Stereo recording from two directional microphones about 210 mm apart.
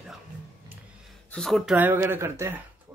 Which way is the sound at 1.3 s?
Centre (ahead or behind).